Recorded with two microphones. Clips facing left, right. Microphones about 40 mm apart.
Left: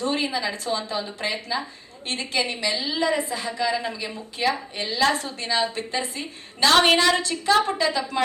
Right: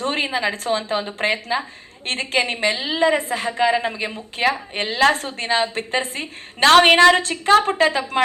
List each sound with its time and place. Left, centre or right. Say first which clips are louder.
0.0 s a woman's voice: right 3 dB; right